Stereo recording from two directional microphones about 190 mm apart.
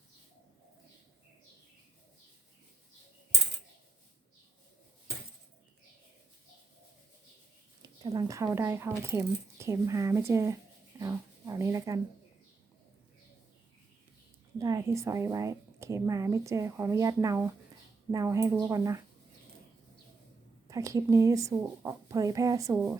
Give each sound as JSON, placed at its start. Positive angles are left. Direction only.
{"t": 7.8, "sound": "speech", "side_deg": -20}
{"t": 14.6, "sound": "speech", "side_deg": -15}
{"t": 20.7, "sound": "speech", "side_deg": -15}